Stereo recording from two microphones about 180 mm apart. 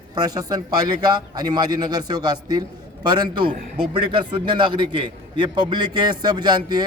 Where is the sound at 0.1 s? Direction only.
20° right (ahead or behind).